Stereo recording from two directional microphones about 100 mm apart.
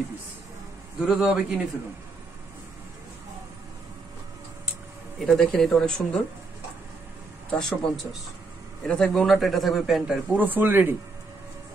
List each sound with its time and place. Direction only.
1.0 s speech: 5° right (ahead or behind)
5.2 s speech: 5° left (ahead or behind)
7.5 s speech: centre (ahead or behind)
10.3 s speech: 20° right (ahead or behind)